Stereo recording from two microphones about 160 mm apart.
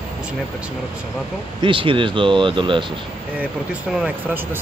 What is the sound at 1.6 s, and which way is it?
Speech, 35° right (ahead or behind).